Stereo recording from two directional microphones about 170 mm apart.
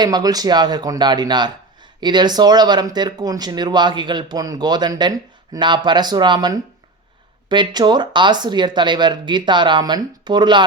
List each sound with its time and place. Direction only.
0.0 s speech: 25° right (ahead or behind)